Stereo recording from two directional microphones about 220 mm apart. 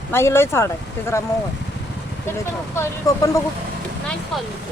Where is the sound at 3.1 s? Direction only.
15° left (ahead or behind).